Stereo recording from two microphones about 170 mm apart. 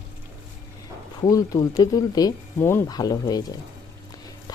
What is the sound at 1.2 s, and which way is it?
Speech, 20° left (ahead or behind).